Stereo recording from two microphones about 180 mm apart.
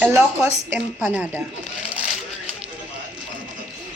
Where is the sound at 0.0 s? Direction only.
10° right (ahead or behind).